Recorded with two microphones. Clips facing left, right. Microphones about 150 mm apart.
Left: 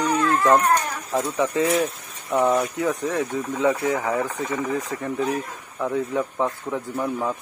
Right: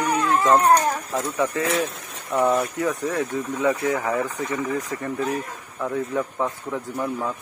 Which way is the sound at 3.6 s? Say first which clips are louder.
Left 1 dB; 20° left (ahead or behind).